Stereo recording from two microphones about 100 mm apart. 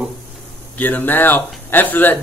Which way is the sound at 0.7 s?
15° left (ahead or behind).